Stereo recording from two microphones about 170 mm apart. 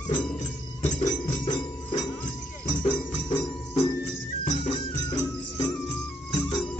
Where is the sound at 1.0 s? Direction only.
25° left (ahead or behind).